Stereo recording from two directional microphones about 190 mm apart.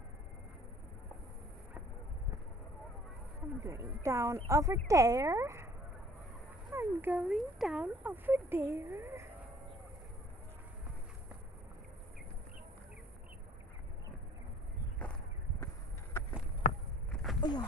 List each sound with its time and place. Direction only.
3.6 s speech: 15° right (ahead or behind)
6.7 s speech: 10° right (ahead or behind)
15.6 s a sound: 15° left (ahead or behind)
17.4 s speech: 25° left (ahead or behind)